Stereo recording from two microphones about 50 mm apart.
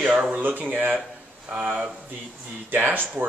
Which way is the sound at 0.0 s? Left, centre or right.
Right.